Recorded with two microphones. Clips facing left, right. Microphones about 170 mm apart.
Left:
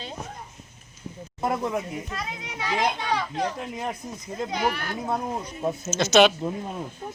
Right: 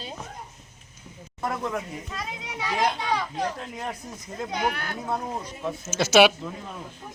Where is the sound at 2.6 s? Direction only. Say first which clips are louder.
Left 1 dB; centre (ahead or behind).